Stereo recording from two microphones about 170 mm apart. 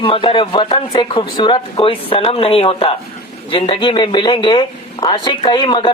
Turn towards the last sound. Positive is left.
turn(degrees=25)  # may be behind; listen again after turning